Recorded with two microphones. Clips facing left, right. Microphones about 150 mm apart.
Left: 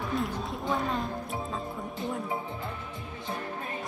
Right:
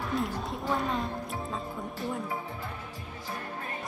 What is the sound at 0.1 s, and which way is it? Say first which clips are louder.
Speech: right 1 dB; centre (ahead or behind).